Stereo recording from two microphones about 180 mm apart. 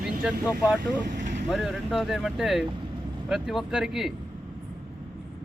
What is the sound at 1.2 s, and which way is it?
Vehicle, 45° right (ahead or behind).